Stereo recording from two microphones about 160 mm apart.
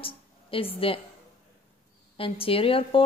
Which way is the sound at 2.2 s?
35° left (ahead or behind).